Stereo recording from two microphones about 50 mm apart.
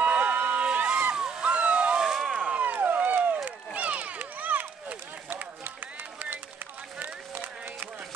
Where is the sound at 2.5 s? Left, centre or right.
Right.